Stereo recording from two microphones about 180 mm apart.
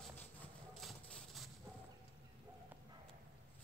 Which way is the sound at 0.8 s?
Centre (ahead or behind).